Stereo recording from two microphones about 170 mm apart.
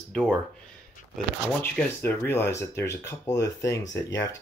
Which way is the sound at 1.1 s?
10° left (ahead or behind).